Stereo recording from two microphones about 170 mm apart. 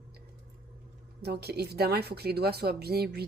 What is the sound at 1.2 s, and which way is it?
A woman's voice, 75° right (ahead or behind).